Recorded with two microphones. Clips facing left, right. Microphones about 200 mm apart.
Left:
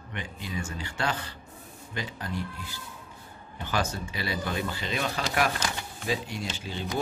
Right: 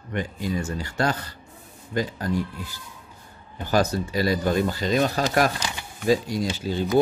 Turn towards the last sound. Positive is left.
turn(degrees=-40)  # may be behind; listen again after turning